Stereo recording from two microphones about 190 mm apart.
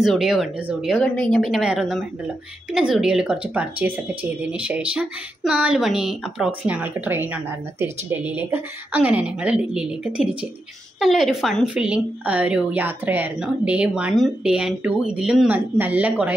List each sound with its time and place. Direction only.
0.0 s a woman's voice: centre (ahead or behind)